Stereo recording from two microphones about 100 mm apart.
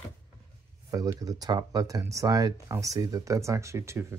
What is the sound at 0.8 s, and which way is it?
Speech, 35° right (ahead or behind).